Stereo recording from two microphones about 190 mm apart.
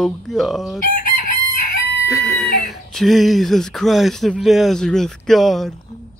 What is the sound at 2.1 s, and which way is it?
Speech, centre (ahead or behind).